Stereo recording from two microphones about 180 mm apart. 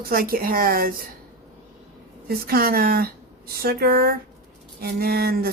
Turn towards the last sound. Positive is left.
turn(degrees=-60)  # may be behind; listen again after turning